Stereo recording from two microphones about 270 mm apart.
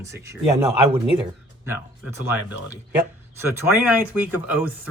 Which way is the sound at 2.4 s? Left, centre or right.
Centre.